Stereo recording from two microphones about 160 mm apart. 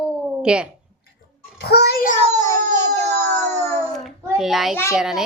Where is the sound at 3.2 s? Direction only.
10° left (ahead or behind).